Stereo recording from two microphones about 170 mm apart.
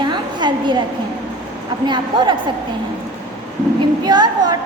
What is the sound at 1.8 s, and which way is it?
Speech, 25° right (ahead or behind).